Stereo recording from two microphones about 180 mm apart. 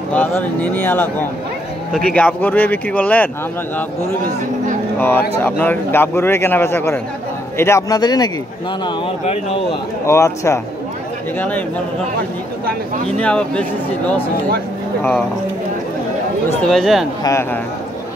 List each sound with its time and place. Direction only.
0.1 s a man's voice: 10° left (ahead or behind)
4.9 s a man's voice: 10° left (ahead or behind)
9.2 s speech: 35° left (ahead or behind)
10.0 s a man's voice: 15° left (ahead or behind)
13.2 s a man's voice: 5° left (ahead or behind)
16.6 s speech: centre (ahead or behind)
17.2 s a man's voice: 15° left (ahead or behind)